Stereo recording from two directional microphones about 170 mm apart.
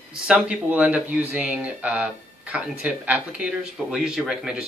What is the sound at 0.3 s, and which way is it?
Speech, 5° right (ahead or behind).